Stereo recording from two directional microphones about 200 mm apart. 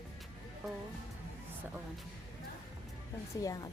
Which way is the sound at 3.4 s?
15° left (ahead or behind).